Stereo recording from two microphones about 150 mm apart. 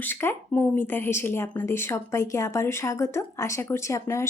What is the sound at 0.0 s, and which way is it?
Speech, 15° left (ahead or behind).